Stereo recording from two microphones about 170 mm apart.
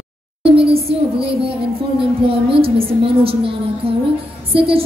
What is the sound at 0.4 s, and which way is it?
A woman's voice, 35° right (ahead or behind).